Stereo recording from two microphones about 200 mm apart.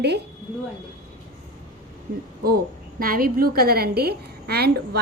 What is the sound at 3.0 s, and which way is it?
A woman's voice, 45° right (ahead or behind).